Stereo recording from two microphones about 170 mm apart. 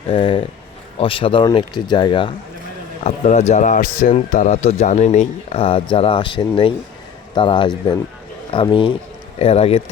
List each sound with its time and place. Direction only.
0.1 s speech: 30° left (ahead or behind)
3.0 s speech: 40° left (ahead or behind)